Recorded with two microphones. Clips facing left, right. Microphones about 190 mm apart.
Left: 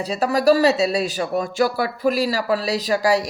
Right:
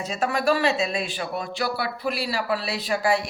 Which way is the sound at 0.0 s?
35° left (ahead or behind).